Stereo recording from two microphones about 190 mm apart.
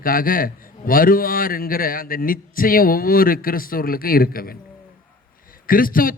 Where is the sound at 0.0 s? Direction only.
50° left (ahead or behind).